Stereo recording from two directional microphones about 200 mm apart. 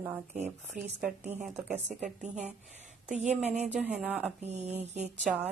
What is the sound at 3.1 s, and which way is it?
Speech, 35° right (ahead or behind).